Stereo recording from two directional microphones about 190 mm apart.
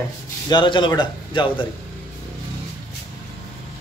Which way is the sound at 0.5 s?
25° left (ahead or behind).